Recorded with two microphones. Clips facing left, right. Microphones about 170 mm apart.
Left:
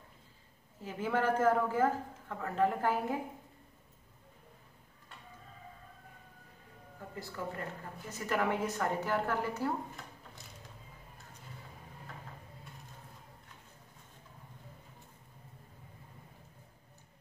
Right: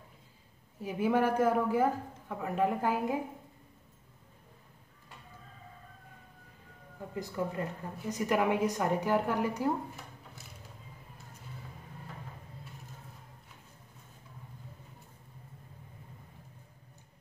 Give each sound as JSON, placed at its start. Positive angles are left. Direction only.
{"t": 0.8, "sound": "speech", "side_deg": -15}
{"t": 7.2, "sound": "speech", "side_deg": -15}